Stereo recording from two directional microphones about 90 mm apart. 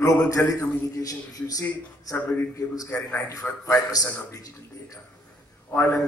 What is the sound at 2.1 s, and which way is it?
Speech, 20° left (ahead or behind).